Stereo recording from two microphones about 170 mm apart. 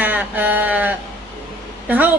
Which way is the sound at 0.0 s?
10° right (ahead or behind).